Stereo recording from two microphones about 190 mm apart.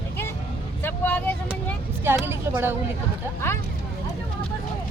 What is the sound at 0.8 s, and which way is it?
Speech, 10° left (ahead or behind).